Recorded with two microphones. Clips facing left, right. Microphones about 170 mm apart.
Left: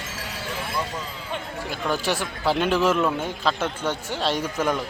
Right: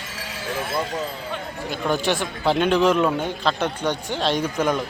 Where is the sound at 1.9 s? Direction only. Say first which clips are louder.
Right 3 dB; centre (ahead or behind).